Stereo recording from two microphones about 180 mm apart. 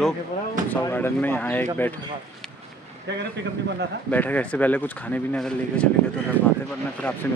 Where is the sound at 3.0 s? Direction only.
75° right (ahead or behind).